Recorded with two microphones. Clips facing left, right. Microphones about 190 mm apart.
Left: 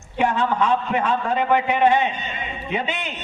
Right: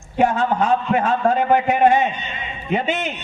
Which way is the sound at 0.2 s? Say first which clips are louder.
Right 3 dB; 45° right (ahead or behind).